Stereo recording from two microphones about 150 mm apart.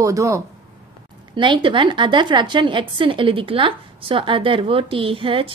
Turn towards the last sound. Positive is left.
turn(degrees=-35)  # may be behind; listen again after turning